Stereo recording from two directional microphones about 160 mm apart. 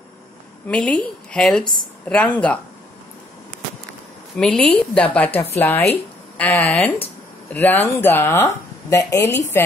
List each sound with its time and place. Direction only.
0.7 s a woman's voice: 5° left (ahead or behind)
4.4 s a woman's voice: 5° left (ahead or behind)